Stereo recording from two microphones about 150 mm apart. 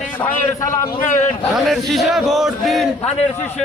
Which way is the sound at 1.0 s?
55° left (ahead or behind).